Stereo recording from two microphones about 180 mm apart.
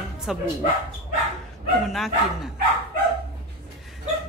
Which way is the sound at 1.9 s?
Centre (ahead or behind).